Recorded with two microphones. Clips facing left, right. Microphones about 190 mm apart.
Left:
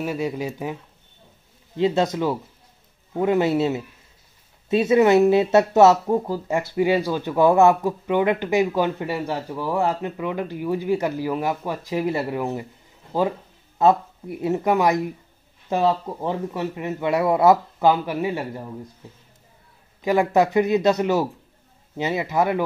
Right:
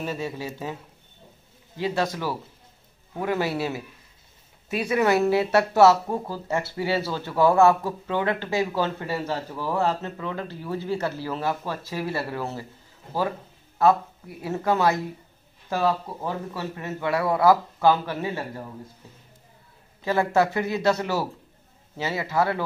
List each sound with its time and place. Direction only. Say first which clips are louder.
0.0 s speech: left 5 dB; 15° left (ahead or behind)
1.8 s a man's voice: left 6 dB; 25° left (ahead or behind)
13.7 s a man's voice: left 2 dB; 20° left (ahead or behind)
20.0 s a man's voice: left 3 dB; 15° left (ahead or behind)